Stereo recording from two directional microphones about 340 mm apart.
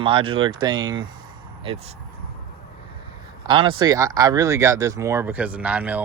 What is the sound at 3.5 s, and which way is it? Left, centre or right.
Speech, centre.